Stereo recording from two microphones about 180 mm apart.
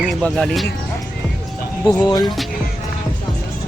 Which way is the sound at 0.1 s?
Centre (ahead or behind).